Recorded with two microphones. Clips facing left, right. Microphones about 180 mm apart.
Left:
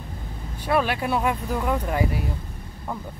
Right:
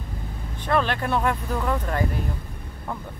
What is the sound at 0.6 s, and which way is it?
Speech, 10° left (ahead or behind).